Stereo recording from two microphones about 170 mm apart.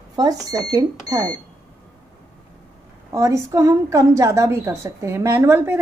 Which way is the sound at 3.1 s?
20° right (ahead or behind).